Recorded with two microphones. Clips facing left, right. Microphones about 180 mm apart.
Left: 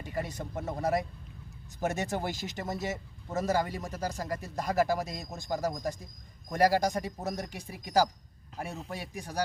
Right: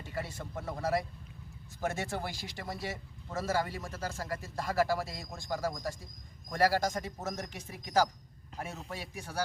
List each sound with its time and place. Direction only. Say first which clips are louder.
0.0 s a man's voice: left 4 dB; 15° left (ahead or behind)
2.6 s speech: left 4 dB; 45° left (ahead or behind)
2.9 s a man's voice: left 5 dB; 20° left (ahead or behind)